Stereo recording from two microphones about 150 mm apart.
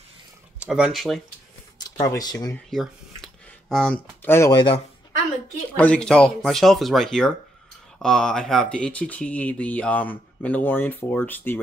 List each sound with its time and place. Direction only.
0.6 s speech: 5° right (ahead or behind)
1.8 s speech: 25° left (ahead or behind)
2.5 s a sound: centre (ahead or behind); by 4.6 s 15° left (ahead or behind)
5.8 s speech: 5° left (ahead or behind)